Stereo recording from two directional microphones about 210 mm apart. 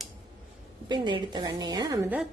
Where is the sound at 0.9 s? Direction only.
20° right (ahead or behind).